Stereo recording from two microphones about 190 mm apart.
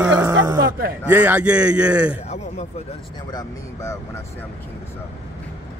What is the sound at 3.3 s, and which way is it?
Speech, 15° left (ahead or behind).